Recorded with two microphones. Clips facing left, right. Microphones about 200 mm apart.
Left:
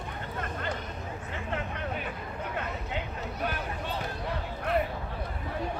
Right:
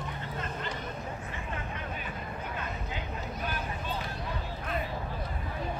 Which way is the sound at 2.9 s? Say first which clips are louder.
Left 3 dB; 65° left (ahead or behind).